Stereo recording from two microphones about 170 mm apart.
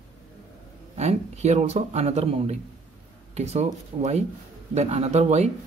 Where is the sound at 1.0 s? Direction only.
40° right (ahead or behind).